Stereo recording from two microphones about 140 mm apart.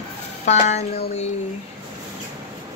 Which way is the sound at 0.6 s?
50° left (ahead or behind).